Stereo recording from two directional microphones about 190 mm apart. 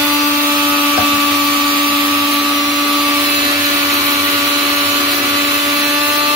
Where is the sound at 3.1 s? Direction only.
20° right (ahead or behind).